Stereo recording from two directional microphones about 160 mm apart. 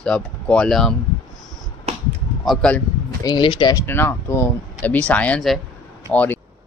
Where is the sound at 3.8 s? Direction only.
15° left (ahead or behind).